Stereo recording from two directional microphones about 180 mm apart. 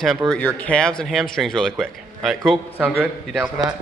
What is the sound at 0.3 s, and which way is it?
A man's voice, 10° left (ahead or behind).